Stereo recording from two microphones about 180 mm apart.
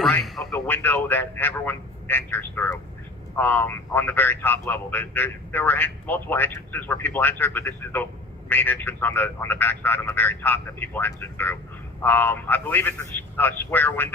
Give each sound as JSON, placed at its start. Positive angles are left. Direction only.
{"t": 0.1, "sound": "a man's voice", "side_deg": 0}